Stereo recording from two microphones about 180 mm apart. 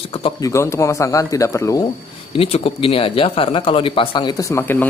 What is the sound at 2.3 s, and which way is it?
Speech, 35° left (ahead or behind).